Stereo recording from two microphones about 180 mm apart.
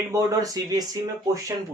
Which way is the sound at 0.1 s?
20° right (ahead or behind).